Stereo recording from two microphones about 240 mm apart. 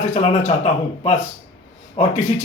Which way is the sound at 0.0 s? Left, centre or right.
Left.